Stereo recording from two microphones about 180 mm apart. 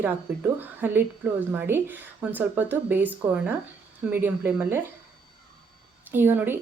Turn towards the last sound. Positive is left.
turn(degrees=-10)  # may be behind; listen again after turning